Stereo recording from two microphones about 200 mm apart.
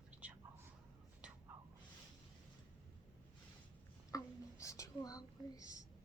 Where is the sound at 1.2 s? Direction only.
5° right (ahead or behind).